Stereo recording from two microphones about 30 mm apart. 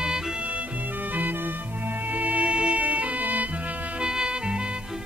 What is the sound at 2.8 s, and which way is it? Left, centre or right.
Music, right.